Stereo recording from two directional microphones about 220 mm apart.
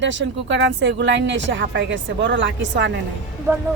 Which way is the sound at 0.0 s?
55° right (ahead or behind).